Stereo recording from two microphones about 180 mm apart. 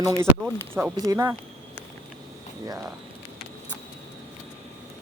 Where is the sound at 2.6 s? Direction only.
20° right (ahead or behind).